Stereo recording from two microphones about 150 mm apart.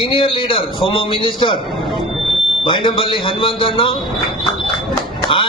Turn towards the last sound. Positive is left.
turn(degrees=35)  # may be behind; listen again after turning